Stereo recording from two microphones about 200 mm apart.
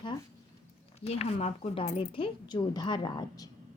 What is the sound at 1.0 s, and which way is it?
A woman's voice, 30° left (ahead or behind).